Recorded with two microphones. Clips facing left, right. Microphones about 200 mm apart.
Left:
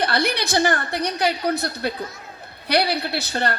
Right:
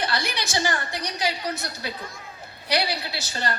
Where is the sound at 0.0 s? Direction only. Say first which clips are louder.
Left 6 dB; 60° left (ahead or behind).